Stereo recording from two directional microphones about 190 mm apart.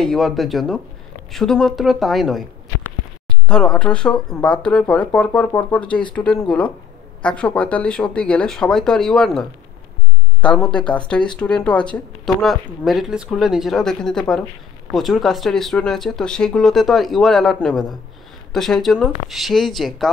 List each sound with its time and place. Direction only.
0.0 s speech: centre (ahead or behind)